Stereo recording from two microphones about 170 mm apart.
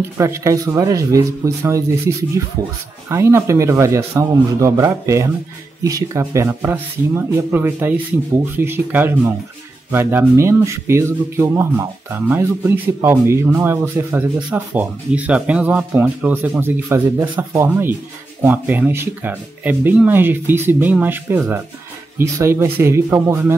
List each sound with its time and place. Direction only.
0.0 s speech: 15° right (ahead or behind)